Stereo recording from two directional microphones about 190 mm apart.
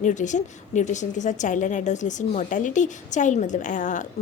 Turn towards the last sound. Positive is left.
turn(degrees=40)  # may be behind; listen again after turning